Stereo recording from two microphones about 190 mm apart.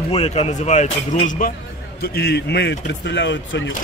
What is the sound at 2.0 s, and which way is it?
A man's voice, 60° left (ahead or behind).